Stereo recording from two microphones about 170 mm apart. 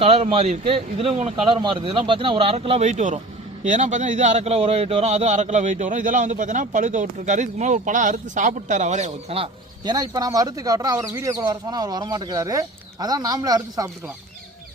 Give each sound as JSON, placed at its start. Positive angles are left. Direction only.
{"t": 0.0, "sound": "a man's voice", "side_deg": -35}